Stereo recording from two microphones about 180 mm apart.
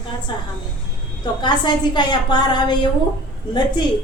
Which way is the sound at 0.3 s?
25° left (ahead or behind).